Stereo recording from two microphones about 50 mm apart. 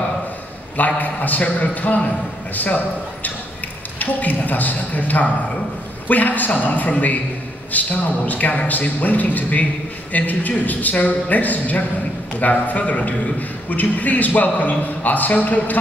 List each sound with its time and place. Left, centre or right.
0.7 s a man's voice: left